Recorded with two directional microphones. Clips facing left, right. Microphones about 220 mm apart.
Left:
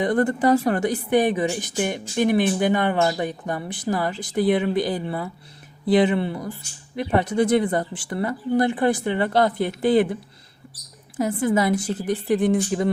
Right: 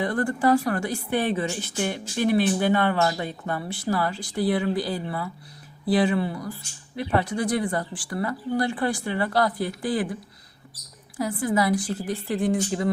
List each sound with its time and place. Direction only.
0.0 s speech: 20° left (ahead or behind)
11.2 s speech: 25° left (ahead or behind)